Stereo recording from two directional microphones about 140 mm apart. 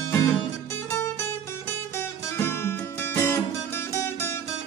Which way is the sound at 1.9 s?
20° left (ahead or behind).